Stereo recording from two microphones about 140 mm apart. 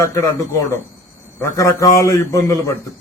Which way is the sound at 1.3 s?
20° left (ahead or behind).